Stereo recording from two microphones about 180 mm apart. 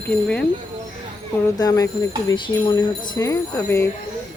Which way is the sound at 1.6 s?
20° left (ahead or behind).